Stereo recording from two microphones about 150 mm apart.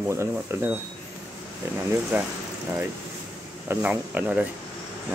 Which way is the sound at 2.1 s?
10° right (ahead or behind).